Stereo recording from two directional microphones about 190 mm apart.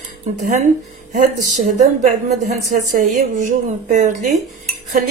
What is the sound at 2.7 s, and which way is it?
A woman's voice, 40° right (ahead or behind).